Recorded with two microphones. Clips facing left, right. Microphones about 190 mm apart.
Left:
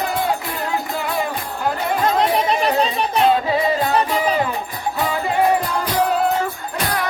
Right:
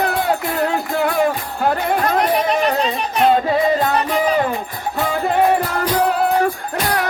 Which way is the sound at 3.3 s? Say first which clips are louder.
Right 3 dB; 50° right (ahead or behind).